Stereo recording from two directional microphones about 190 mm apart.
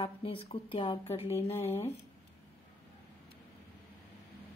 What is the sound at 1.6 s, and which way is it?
Speech, 15° left (ahead or behind).